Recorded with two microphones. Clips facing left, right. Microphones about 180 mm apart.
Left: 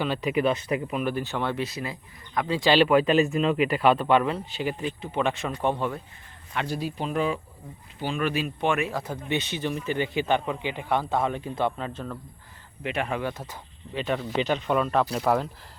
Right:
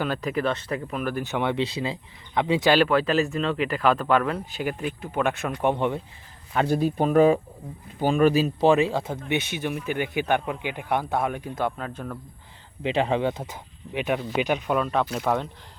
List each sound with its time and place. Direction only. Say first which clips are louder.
0.2 s speech: left 2 dB; 10° left (ahead or behind)
1.2 s speech: right 3 dB; 15° right (ahead or behind)
2.8 s speech: left 2 dB; 5° left (ahead or behind)
5.6 s speech: right 3 dB; 20° right (ahead or behind)
6.5 s speech: right 7 dB; 45° right (ahead or behind); by 12.1 s centre (ahead or behind)
12.8 s speech: right 5 dB; 30° right (ahead or behind); by 14.8 s 10° right (ahead or behind)
14.8 s speech: left 1 dB; centre (ahead or behind)